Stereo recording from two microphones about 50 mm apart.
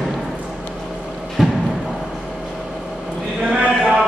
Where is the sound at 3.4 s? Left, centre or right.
Right.